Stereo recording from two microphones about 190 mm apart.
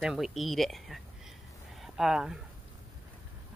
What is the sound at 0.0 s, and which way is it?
A woman's voice, centre (ahead or behind).